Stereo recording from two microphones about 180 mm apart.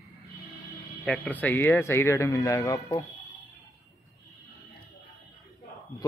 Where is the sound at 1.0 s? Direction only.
5° left (ahead or behind).